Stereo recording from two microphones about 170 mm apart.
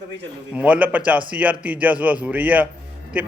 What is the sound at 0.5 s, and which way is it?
Speech, 10° right (ahead or behind).